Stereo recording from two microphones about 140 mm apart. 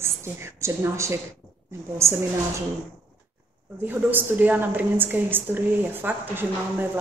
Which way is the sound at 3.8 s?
15° right (ahead or behind).